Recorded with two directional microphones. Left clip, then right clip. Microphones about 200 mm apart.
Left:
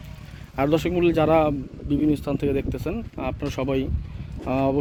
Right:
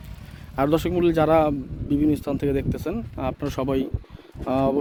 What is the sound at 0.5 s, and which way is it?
Speech, 20° right (ahead or behind).